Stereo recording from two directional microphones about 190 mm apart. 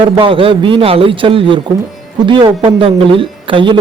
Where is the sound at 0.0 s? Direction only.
25° right (ahead or behind).